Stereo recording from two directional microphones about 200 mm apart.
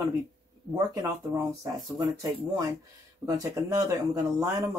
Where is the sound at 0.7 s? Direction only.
15° right (ahead or behind).